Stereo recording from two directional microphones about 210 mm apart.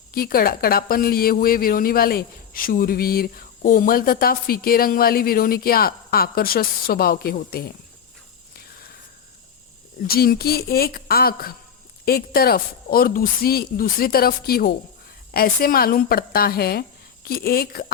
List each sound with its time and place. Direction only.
0.1 s a woman's voice: 45° left (ahead or behind)
10.1 s a woman's voice: 45° left (ahead or behind)